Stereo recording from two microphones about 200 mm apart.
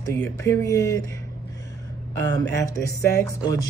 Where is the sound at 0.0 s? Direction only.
10° left (ahead or behind).